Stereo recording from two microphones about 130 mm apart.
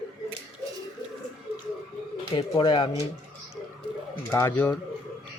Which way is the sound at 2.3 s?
35° left (ahead or behind).